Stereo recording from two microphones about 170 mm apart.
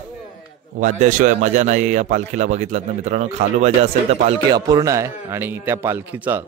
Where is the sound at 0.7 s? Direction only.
50° right (ahead or behind).